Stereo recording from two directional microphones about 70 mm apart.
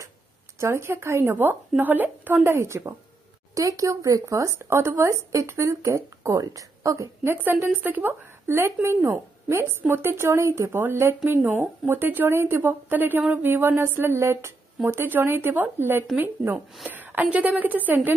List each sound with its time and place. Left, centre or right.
0.6 s a woman's voice: right
2.4 s speech: right
3.5 s speech: right
4.6 s speech: right
7.3 s a woman's voice: right